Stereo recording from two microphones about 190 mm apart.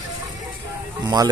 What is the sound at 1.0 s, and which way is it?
Speech, 20° right (ahead or behind).